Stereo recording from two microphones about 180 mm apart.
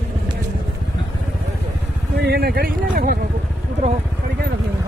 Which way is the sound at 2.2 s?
65° right (ahead or behind).